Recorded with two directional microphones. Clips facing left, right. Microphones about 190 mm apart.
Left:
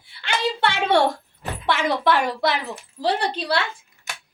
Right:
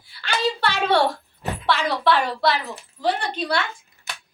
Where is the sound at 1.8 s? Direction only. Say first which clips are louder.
Left 2 dB; 20° left (ahead or behind).